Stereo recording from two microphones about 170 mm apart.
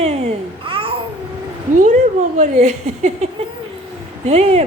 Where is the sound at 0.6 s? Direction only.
30° right (ahead or behind).